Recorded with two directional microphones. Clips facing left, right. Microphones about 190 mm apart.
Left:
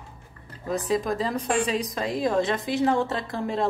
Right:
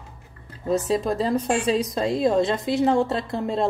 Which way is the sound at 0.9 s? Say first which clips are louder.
Even; 30° right (ahead or behind).